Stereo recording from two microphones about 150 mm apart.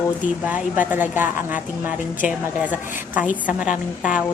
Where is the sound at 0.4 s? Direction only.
10° right (ahead or behind).